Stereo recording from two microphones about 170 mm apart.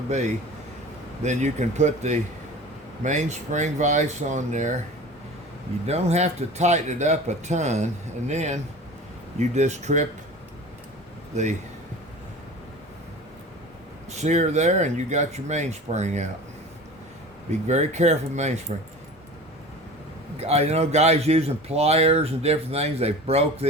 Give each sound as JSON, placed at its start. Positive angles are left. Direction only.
{"t": 0.1, "sound": "speech", "side_deg": -40}
{"t": 5.8, "sound": "speech", "side_deg": -40}
{"t": 14.1, "sound": "speech", "side_deg": -40}
{"t": 17.7, "sound": "speech", "side_deg": -40}
{"t": 20.5, "sound": "speech", "side_deg": -40}